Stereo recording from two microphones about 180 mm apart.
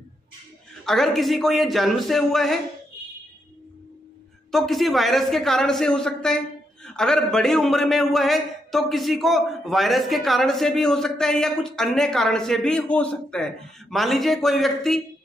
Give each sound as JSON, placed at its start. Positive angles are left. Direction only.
{"t": 0.8, "sound": "a man's voice", "side_deg": 0}
{"t": 4.5, "sound": "a man's voice", "side_deg": 0}